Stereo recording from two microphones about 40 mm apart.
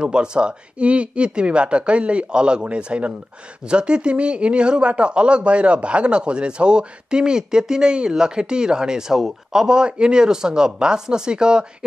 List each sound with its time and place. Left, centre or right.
0.0 s a man's voice: right